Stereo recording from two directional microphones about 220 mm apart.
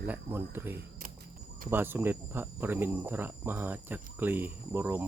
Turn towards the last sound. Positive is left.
turn(degrees=-10)  # may be behind; listen again after turning